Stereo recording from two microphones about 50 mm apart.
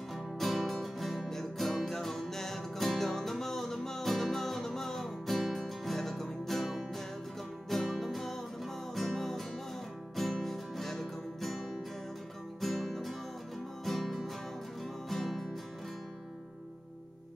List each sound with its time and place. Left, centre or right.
0.1 s music: centre
10.4 s music: centre